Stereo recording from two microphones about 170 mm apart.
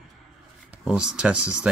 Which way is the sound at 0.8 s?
5° right (ahead or behind).